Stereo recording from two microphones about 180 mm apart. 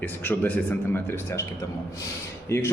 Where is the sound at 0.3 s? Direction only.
10° left (ahead or behind).